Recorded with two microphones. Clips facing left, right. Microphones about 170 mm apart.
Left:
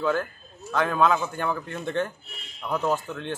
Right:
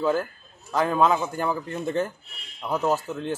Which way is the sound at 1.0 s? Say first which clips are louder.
Right 1 dB; 10° right (ahead or behind).